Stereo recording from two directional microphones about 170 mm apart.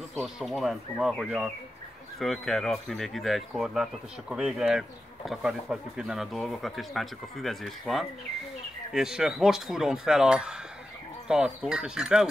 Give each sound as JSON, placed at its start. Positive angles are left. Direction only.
{"t": 0.1, "sound": "speech", "side_deg": 0}